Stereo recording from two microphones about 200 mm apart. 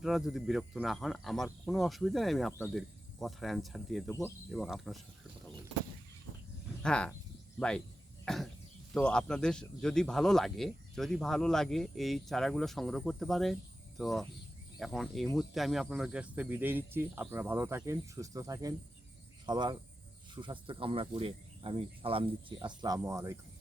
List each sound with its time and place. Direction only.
0.0 s speech: centre (ahead or behind)
6.8 s speech: 5° left (ahead or behind)
8.2 s cough: centre (ahead or behind)
8.9 s speech: 5° left (ahead or behind); by 23.4 s 15° right (ahead or behind)